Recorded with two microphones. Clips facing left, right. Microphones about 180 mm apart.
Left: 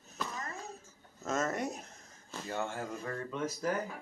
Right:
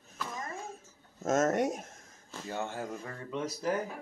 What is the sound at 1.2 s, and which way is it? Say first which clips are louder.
Speech: right 6 dB; 45° right (ahead or behind).